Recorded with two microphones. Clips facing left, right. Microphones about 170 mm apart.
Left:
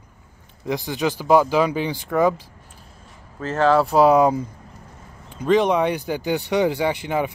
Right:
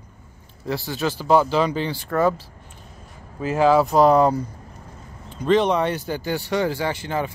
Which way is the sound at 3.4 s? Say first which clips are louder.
Right 1 dB; 10° right (ahead or behind).